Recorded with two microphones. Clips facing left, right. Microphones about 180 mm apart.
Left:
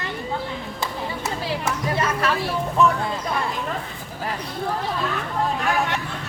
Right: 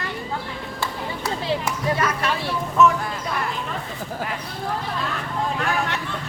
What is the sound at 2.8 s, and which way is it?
Speech, 30° left (ahead or behind).